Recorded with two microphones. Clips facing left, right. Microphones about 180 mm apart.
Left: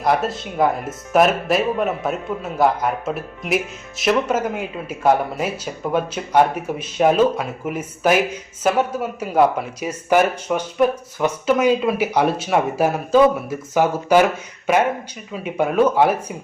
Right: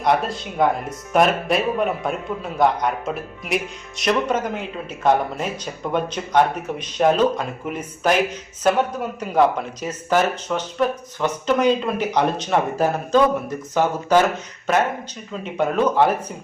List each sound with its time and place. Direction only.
0.0 s speech: centre (ahead or behind)
15.3 s speech: 10° left (ahead or behind)